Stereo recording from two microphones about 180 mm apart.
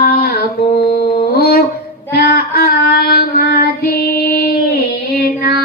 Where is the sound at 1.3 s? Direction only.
55° left (ahead or behind).